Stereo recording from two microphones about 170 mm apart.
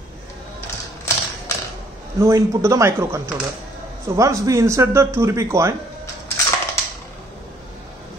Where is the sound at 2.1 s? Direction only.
15° right (ahead or behind).